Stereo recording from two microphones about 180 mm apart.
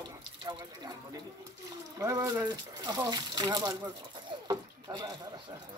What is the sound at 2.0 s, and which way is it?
Speech, 15° right (ahead or behind).